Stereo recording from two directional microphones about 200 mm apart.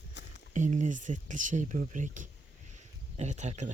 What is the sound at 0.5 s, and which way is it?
Speech, 35° right (ahead or behind).